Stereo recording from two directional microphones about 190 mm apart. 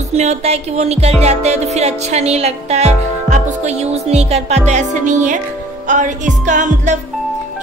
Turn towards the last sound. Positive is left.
turn(degrees=-40)  # may be behind; listen again after turning